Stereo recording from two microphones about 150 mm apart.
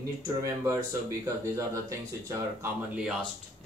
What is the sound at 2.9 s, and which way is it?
Speech, 10° right (ahead or behind).